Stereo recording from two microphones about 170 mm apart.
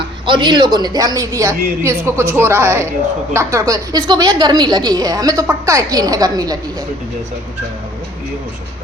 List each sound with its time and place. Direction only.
0.3 s a woman's voice: 25° right (ahead or behind)